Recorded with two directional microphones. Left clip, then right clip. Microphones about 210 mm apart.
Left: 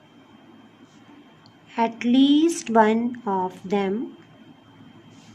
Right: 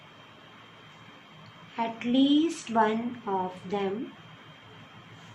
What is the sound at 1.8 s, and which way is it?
A woman's voice, 60° left (ahead or behind).